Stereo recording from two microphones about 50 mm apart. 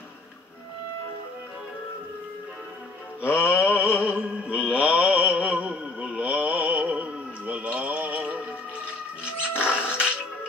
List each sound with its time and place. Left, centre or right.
3.3 s music: left
4.0 s music: right
4.7 s mantra: right
9.6 s music: right